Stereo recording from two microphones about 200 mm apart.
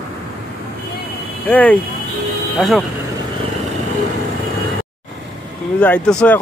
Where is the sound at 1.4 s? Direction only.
10° left (ahead or behind).